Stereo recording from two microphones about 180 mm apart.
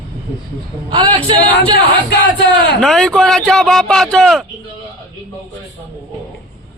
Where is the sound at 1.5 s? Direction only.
65° left (ahead or behind).